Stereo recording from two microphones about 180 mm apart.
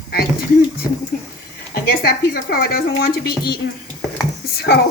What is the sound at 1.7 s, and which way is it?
A woman's voice, 60° left (ahead or behind).